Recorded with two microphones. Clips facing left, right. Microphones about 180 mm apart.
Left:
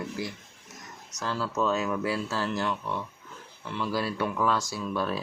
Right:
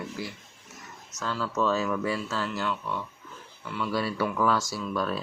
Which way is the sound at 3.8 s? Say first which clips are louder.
Right 1 dB; centre (ahead or behind).